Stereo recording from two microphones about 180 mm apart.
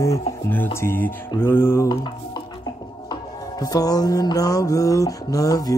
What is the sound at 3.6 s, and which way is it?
Mantra, 20° left (ahead or behind).